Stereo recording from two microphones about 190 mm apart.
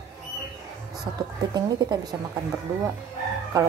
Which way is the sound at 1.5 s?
20° right (ahead or behind).